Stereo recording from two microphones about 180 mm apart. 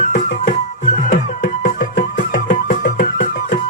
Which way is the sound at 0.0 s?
45° left (ahead or behind).